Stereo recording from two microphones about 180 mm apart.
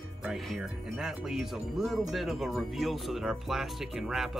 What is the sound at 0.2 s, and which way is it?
Speech, 5° right (ahead or behind).